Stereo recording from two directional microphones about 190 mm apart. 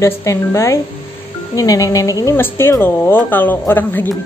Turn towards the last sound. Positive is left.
turn(degrees=10)  # may be behind; listen again after turning